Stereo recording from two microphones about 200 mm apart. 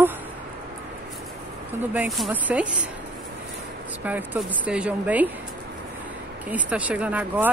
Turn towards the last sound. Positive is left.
turn(degrees=-10)  # may be behind; listen again after turning